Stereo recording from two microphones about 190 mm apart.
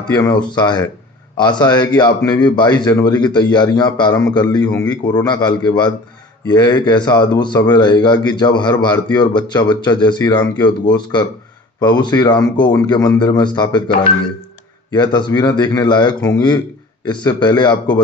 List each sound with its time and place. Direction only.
0.1 s speech: 20° left (ahead or behind)
14.9 s speech: 25° left (ahead or behind)